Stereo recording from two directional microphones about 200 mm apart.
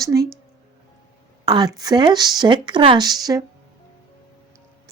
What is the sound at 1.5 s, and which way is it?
A woman's voice, 20° right (ahead or behind).